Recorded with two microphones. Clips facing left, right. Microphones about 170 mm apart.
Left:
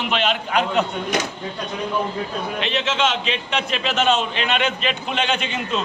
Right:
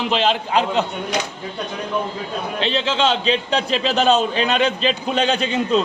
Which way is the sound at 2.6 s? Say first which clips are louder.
Right 3 dB; 30° right (ahead or behind).